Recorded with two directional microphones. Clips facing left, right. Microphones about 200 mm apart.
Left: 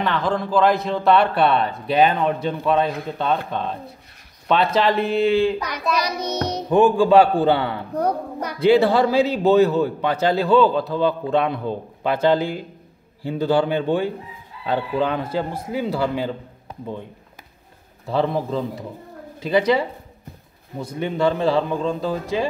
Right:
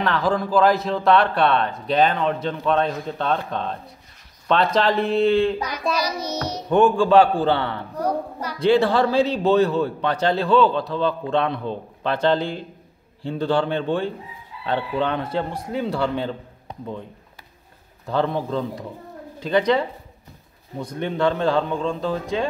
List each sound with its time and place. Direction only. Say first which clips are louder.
0.0 s a man's voice: right 1 dB; centre (ahead or behind)
5.7 s music: left 1 dB; 60° left (ahead or behind)
6.7 s a man's voice: left 1 dB; 5° left (ahead or behind)
18.0 s a man's voice: left 1 dB; 5° left (ahead or behind)